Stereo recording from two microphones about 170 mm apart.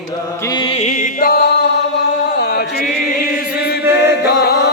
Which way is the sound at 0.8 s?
45° left (ahead or behind).